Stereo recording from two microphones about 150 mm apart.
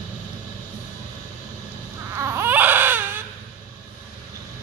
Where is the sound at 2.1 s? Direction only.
20° right (ahead or behind).